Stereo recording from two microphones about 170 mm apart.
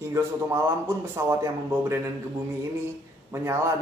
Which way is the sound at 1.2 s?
15° right (ahead or behind).